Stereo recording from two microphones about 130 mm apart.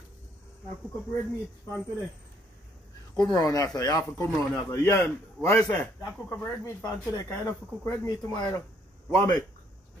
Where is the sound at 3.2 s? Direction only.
30° left (ahead or behind).